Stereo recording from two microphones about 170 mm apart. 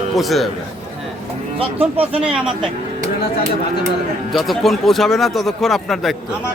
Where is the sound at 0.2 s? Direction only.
Centre (ahead or behind).